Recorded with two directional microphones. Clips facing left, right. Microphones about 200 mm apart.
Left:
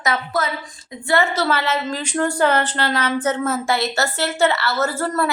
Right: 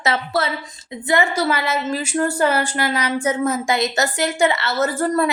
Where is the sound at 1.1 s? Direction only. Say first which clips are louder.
Even; 15° right (ahead or behind).